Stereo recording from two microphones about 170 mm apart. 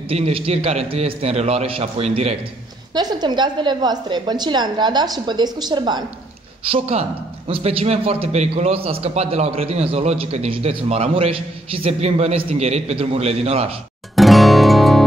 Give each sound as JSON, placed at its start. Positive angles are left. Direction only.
{"t": 0.1, "sound": "a man's voice", "side_deg": -35}
{"t": 2.9, "sound": "a woman's voice", "side_deg": -25}
{"t": 6.6, "sound": "a man's voice", "side_deg": -35}
{"t": 14.1, "sound": "music", "side_deg": 0}